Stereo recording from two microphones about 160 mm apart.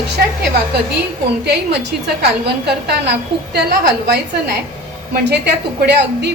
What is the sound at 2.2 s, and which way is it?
A woman's voice, 90° right.